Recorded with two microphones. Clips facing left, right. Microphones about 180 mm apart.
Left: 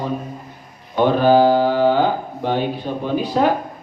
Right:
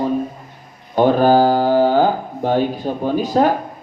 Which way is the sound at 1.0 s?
45° right (ahead or behind).